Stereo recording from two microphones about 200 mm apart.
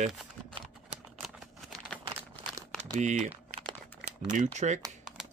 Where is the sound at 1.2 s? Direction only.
Centre (ahead or behind).